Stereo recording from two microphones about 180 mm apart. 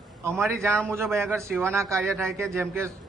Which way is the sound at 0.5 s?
15° right (ahead or behind).